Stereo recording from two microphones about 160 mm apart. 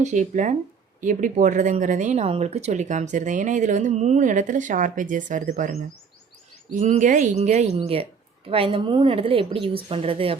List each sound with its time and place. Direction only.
0.0 s a woman's voice: 50° right (ahead or behind)